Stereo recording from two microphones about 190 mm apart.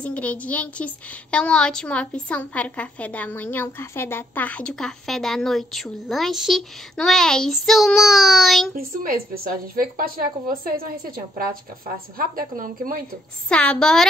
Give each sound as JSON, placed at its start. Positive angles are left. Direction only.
{"t": 0.0, "sound": "a woman's voice", "side_deg": 10}
{"t": 8.7, "sound": "a woman's voice", "side_deg": -50}
{"t": 13.5, "sound": "a woman's voice", "side_deg": 5}